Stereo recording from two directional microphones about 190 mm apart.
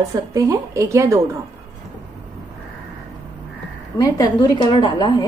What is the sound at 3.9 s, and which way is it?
A woman's voice, 20° left (ahead or behind).